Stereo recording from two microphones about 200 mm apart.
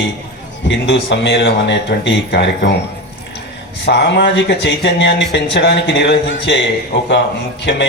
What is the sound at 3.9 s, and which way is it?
Speech, 60° left (ahead or behind).